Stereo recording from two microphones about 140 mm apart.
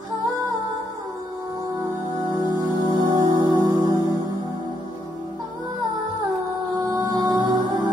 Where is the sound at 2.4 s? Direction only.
30° left (ahead or behind).